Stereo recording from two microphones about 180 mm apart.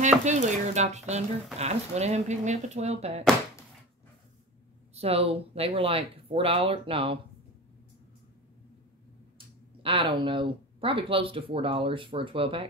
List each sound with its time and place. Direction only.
0.2 s speech: 40° right (ahead or behind)
4.9 s speech: 35° right (ahead or behind)
9.8 s speech: 30° right (ahead or behind)